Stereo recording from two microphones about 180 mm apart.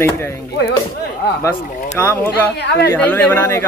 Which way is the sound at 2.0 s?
15° left (ahead or behind).